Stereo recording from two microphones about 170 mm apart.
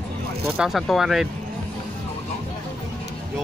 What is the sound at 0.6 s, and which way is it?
Speech, centre (ahead or behind).